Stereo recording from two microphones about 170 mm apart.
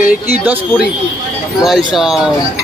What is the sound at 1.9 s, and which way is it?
Speech, 5° right (ahead or behind).